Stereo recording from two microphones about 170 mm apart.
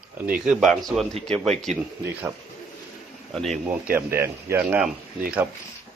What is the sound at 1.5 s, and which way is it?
Speech, 40° right (ahead or behind).